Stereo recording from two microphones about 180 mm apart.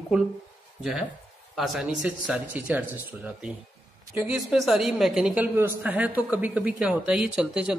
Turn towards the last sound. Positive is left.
turn(degrees=-5)  # may be behind; listen again after turning